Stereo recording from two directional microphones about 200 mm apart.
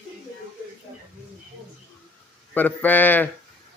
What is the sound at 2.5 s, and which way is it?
Speech, 10° left (ahead or behind).